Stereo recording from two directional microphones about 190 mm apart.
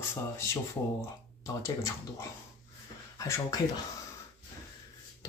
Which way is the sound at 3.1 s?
15° left (ahead or behind).